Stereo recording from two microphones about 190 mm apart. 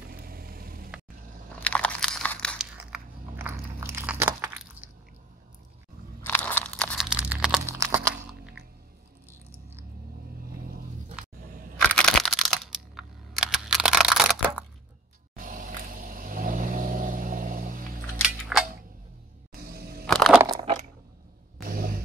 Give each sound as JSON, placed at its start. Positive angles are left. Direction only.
{"t": 0.1, "sound": "vehicle", "side_deg": -50}
{"t": 1.6, "sound": "biting", "side_deg": 5}
{"t": 6.2, "sound": "a sound", "side_deg": 10}
{"t": 7.1, "sound": "crack", "side_deg": -5}
{"t": 7.8, "sound": "crumpling", "side_deg": -15}
{"t": 11.9, "sound": "computer keyboard", "side_deg": 5}
{"t": 15.3, "sound": "vehicle", "side_deg": -50}
{"t": 18.1, "sound": "camera", "side_deg": 0}
{"t": 19.6, "sound": "a sound", "side_deg": -55}
{"t": 20.1, "sound": "a sound", "side_deg": 0}
{"t": 21.5, "sound": "vehicle", "side_deg": -50}